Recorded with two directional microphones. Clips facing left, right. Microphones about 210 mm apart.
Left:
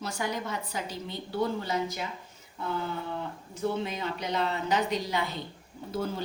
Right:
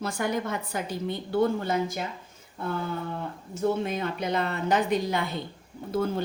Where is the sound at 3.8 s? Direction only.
50° right (ahead or behind).